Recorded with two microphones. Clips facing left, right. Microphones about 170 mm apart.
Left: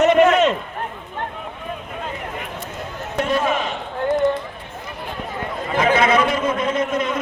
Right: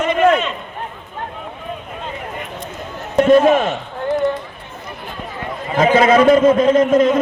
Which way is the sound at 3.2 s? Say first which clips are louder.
Right 10 dB; 45° right (ahead or behind).